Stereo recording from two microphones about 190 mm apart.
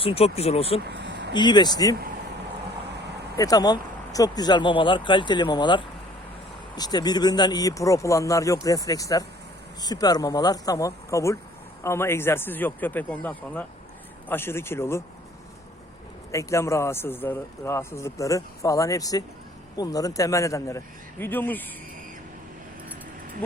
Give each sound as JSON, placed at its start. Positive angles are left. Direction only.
{"t": 0.0, "sound": "speech", "side_deg": 30}
{"t": 0.9, "sound": "a sound", "side_deg": -65}
{"t": 1.3, "sound": "speech", "side_deg": 25}
{"t": 3.3, "sound": "speech", "side_deg": 20}
{"t": 16.3, "sound": "speech", "side_deg": 15}